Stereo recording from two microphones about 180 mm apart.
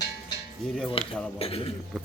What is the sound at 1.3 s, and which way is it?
Speech, 30° left (ahead or behind).